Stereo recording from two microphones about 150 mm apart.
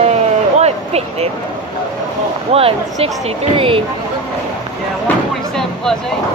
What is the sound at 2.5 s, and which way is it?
Speech, 40° right (ahead or behind).